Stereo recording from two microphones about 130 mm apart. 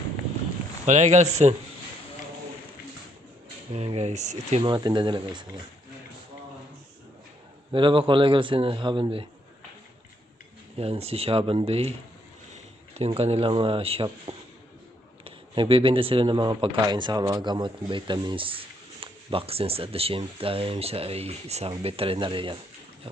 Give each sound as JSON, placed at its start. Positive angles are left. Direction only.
{"t": 0.9, "sound": "speech", "side_deg": -65}
{"t": 3.7, "sound": "speech", "side_deg": -55}
{"t": 4.6, "sound": "a man's voice", "side_deg": -35}
{"t": 7.7, "sound": "a man's voice", "side_deg": -40}
{"t": 10.8, "sound": "speech", "side_deg": -50}
{"t": 13.1, "sound": "speech", "side_deg": -50}